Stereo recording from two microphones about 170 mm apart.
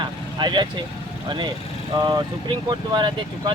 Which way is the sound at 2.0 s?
25° right (ahead or behind).